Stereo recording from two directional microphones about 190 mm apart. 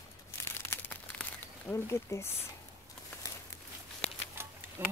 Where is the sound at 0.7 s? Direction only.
10° left (ahead or behind).